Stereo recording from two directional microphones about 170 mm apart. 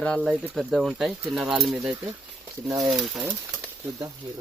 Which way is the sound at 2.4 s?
15° right (ahead or behind).